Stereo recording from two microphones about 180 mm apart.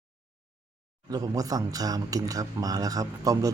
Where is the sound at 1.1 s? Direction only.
20° right (ahead or behind).